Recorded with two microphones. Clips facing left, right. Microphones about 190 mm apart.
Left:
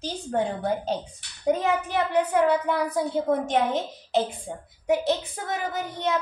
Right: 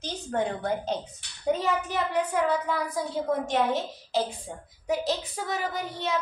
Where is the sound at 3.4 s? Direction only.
20° left (ahead or behind).